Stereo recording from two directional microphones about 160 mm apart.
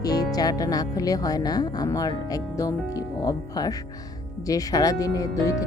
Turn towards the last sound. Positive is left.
turn(degrees=20)  # may be behind; listen again after turning